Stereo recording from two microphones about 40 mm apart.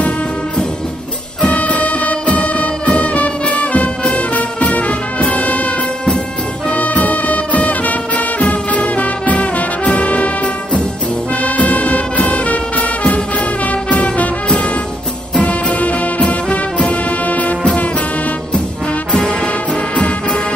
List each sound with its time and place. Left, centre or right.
1.5 s music: left
6.7 s music: left
15.3 s music: left
19.1 s music: left